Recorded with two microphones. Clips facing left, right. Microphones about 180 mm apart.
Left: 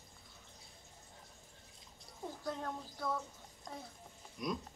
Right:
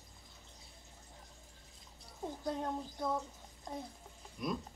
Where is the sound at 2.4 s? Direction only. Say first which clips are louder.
Right 4 dB; 20° right (ahead or behind).